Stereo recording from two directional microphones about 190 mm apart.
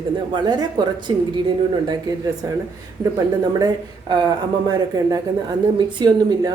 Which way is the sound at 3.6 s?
20° right (ahead or behind).